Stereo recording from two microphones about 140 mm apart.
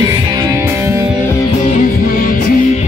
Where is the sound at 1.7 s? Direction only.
85° left.